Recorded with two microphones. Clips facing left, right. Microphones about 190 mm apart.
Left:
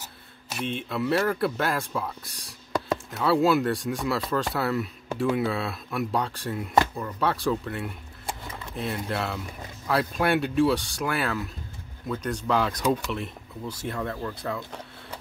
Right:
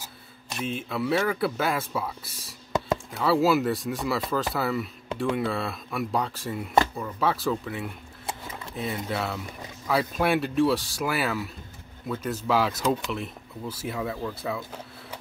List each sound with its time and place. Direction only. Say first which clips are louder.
0.5 s speech: even; centre (ahead or behind)
2.7 s a sound: right 1 dB; 20° right (ahead or behind)
3.1 s speech: even; centre (ahead or behind)